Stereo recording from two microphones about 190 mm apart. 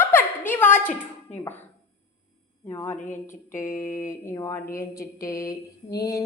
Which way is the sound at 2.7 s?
10° left (ahead or behind).